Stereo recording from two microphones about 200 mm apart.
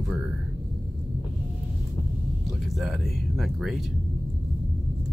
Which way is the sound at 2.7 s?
Centre (ahead or behind).